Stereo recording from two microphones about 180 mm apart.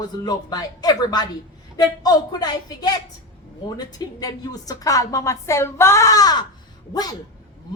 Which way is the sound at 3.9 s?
20° left (ahead or behind).